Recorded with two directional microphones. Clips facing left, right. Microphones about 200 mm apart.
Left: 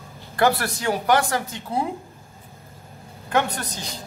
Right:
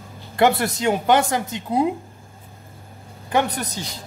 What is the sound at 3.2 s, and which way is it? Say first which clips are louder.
Speech: right 2 dB; 15° right (ahead or behind).